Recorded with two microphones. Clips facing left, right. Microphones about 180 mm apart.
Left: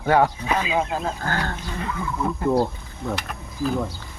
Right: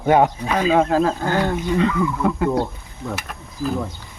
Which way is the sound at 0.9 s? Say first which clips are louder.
Right 9 dB; 80° right.